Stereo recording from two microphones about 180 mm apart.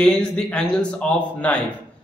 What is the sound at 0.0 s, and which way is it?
A man's voice, 5° left (ahead or behind).